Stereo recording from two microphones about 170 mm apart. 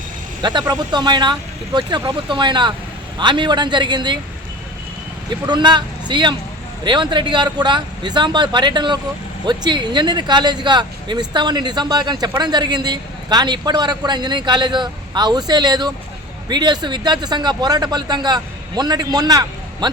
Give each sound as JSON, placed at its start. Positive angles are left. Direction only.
{"t": 0.4, "sound": "a man's voice", "side_deg": -25}
{"t": 5.3, "sound": "a man's voice", "side_deg": -25}